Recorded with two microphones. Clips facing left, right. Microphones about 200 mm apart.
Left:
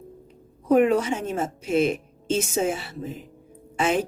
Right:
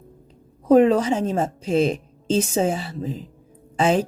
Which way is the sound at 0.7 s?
30° right (ahead or behind).